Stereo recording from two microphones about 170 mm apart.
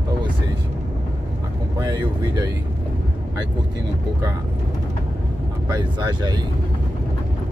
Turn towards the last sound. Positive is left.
turn(degrees=-25)  # may be behind; listen again after turning